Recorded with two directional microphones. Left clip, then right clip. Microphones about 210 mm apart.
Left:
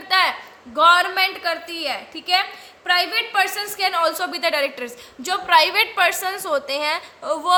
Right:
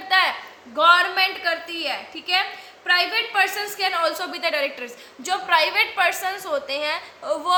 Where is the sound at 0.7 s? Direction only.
50° left (ahead or behind).